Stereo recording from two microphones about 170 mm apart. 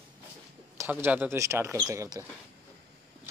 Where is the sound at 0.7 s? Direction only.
15° right (ahead or behind).